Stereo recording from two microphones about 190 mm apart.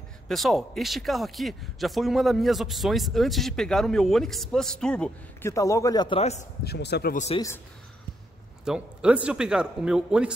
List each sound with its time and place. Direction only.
0.3 s a man's voice: centre (ahead or behind)
5.5 s a man's voice: 15° left (ahead or behind); by 6.4 s 35° left (ahead or behind)
6.6 s speech: 60° left (ahead or behind)
7.3 s speech: 15° left (ahead or behind)
8.6 s a man's voice: 5° right (ahead or behind)